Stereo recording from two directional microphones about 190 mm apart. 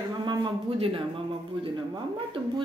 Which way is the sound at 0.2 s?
25° right (ahead or behind).